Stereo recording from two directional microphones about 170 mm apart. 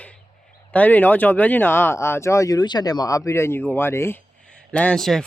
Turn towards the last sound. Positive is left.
turn(degrees=0)  # may be behind; listen again after turning